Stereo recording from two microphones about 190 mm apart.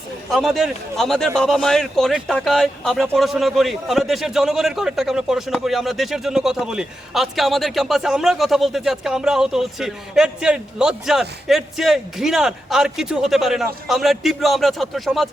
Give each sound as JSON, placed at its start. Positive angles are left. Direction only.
{"t": 0.3, "sound": "speech", "side_deg": 0}